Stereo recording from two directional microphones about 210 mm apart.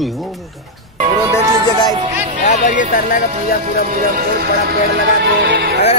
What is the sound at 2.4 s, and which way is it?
Speech, 35° left (ahead or behind).